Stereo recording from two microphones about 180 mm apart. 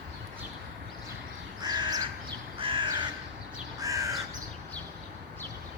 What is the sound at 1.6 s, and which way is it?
Crow, 25° right (ahead or behind).